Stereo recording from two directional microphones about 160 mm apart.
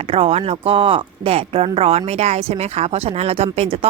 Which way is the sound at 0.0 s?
35° right (ahead or behind).